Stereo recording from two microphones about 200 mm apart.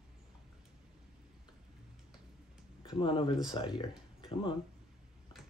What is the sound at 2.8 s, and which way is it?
Speech, 25° left (ahead or behind).